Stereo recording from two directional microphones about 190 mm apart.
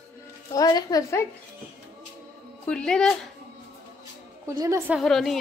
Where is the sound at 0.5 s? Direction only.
20° left (ahead or behind).